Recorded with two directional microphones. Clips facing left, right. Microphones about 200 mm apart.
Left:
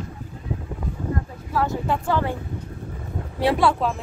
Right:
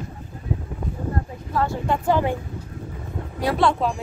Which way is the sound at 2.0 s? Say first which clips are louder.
Right 5 dB; 15° right (ahead or behind).